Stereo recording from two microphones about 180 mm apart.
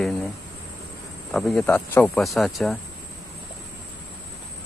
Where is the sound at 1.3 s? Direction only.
5° left (ahead or behind).